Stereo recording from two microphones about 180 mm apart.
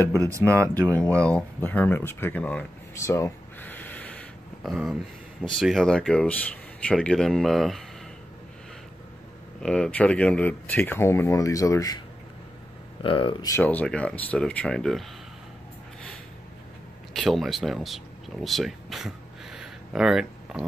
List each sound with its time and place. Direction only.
0.2 s speech: 15° right (ahead or behind)
0.9 s speech: 5° left (ahead or behind)
9.6 s speech: 5° left (ahead or behind)
13.0 s speech: 30° left (ahead or behind); by 15.0 s 5° left (ahead or behind)
17.1 s speech: centre (ahead or behind)